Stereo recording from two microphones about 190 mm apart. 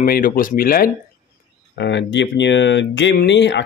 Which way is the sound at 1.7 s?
65° left (ahead or behind).